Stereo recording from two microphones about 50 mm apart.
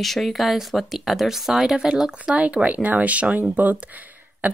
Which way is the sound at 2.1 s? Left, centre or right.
Right.